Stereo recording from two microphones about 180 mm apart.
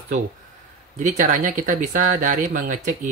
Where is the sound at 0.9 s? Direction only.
45° right (ahead or behind).